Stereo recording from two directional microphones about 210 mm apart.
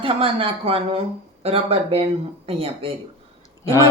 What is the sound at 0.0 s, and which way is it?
A woman's voice, 25° right (ahead or behind).